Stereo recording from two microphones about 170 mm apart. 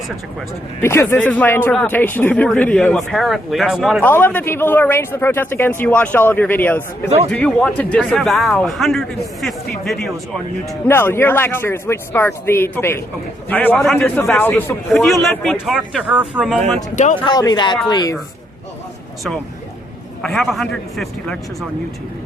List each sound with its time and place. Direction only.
0.8 s speech: 15° left (ahead or behind); by 4.0 s 5° right (ahead or behind)
4.0 s speech: 10° left (ahead or behind)
10.7 s speech: 15° left (ahead or behind)
15.2 s speech: centre (ahead or behind)
16.9 s speech: 45° left (ahead or behind)
17.2 s speech: 25° left (ahead or behind)
20.2 s speech: centre (ahead or behind)